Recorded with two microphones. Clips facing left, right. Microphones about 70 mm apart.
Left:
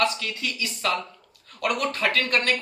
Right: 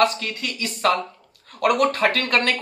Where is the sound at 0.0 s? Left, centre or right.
Right.